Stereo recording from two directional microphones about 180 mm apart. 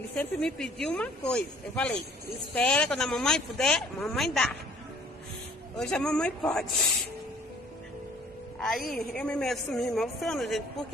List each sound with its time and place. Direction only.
0.1 s speech: 5° left (ahead or behind)
5.8 s speech: 5° left (ahead or behind)
8.5 s a woman's voice: centre (ahead or behind)